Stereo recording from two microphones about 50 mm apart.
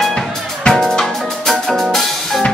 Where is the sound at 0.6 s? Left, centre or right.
Centre.